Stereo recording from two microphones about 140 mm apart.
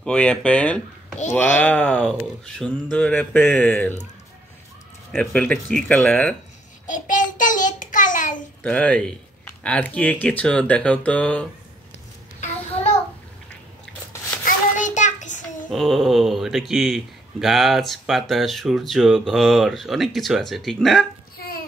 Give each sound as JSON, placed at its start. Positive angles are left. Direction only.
{"t": 0.0, "sound": "speech", "side_deg": 5}
{"t": 5.1, "sound": "speech", "side_deg": 5}
{"t": 6.9, "sound": "child singing", "side_deg": 70}
{"t": 8.6, "sound": "speech", "side_deg": 10}
{"t": 14.4, "sound": "child singing", "side_deg": 65}
{"t": 15.7, "sound": "speech", "side_deg": 0}